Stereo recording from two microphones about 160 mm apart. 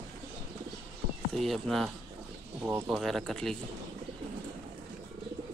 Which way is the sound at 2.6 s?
15° right (ahead or behind).